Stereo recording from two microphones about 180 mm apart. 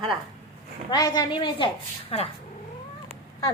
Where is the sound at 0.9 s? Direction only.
20° left (ahead or behind).